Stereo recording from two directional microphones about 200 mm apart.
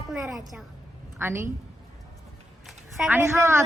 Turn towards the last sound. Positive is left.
turn(degrees=-10)  # may be behind; listen again after turning